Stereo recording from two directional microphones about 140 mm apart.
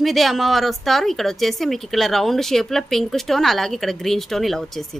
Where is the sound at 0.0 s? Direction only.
Centre (ahead or behind).